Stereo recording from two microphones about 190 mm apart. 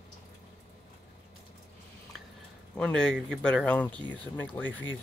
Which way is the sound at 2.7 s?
5° left (ahead or behind).